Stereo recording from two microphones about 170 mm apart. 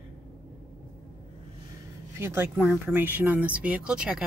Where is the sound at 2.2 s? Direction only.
15° right (ahead or behind).